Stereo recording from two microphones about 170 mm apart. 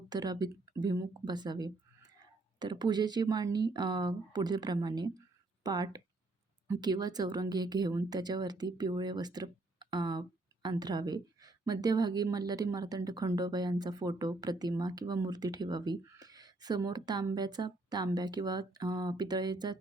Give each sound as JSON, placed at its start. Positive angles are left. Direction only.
{"t": 0.1, "sound": "speech", "side_deg": -25}